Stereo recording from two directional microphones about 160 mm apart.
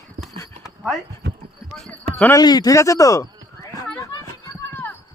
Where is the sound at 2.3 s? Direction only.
25° left (ahead or behind).